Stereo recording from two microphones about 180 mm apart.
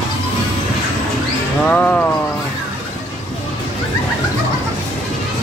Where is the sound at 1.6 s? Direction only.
10° left (ahead or behind).